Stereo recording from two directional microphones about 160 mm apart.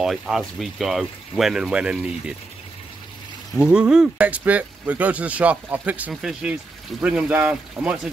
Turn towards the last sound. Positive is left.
turn(degrees=-10)  # may be behind; listen again after turning